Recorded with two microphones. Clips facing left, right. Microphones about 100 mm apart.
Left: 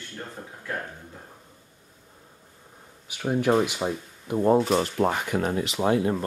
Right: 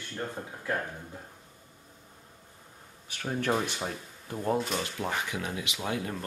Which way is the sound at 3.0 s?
10° left (ahead or behind).